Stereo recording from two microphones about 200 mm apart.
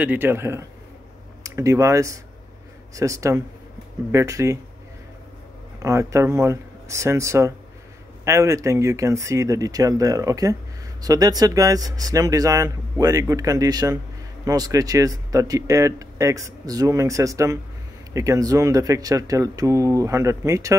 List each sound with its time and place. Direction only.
0.0 s speech: 10° right (ahead or behind)
5.8 s speech: 15° right (ahead or behind)